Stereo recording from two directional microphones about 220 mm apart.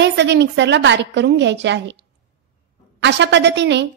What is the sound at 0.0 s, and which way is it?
A woman's voice, 50° right (ahead or behind).